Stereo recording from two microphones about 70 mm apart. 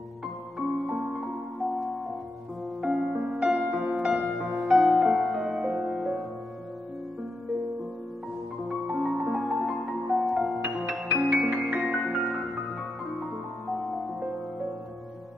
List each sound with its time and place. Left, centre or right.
0.8 s music: centre
8.5 s music: centre
11.1 s music: centre
11.6 s music: centre